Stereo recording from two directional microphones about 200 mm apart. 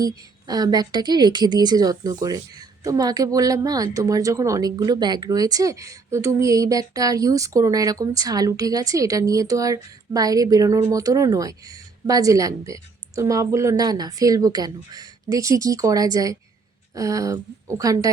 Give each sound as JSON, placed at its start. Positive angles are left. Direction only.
{"t": 0.0, "sound": "a woman's voice", "side_deg": -20}